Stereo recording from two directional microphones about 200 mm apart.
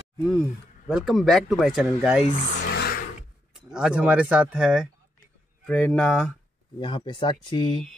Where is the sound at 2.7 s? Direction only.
50° left (ahead or behind).